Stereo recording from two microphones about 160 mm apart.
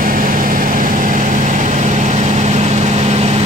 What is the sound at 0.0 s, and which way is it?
Vehicle, 55° right (ahead or behind).